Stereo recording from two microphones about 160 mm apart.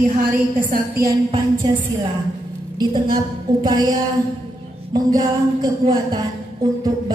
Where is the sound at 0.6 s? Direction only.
60° right (ahead or behind).